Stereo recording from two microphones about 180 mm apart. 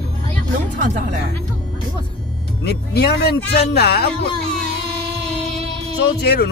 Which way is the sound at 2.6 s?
65° left (ahead or behind).